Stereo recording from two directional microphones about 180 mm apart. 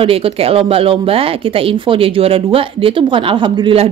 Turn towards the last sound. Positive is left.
turn(degrees=-30)  # may be behind; listen again after turning